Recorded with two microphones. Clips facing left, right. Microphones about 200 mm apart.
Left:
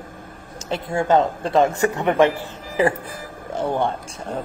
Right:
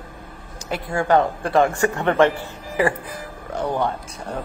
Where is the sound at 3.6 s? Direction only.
25° left (ahead or behind).